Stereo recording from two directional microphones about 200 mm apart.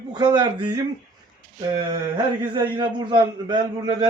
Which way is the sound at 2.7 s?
25° right (ahead or behind).